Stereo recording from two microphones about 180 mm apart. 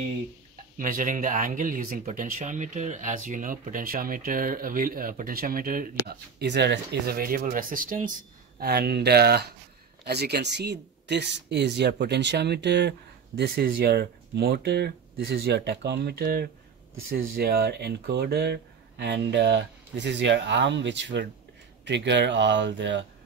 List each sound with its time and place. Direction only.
0.7 s speech: 45° right (ahead or behind)
6.4 s speech: 70° right (ahead or behind); by 8.1 s 50° right (ahead or behind)
8.5 s speech: 60° right (ahead or behind)
13.4 s speech: 55° right (ahead or behind)
16.9 s speech: 75° right (ahead or behind)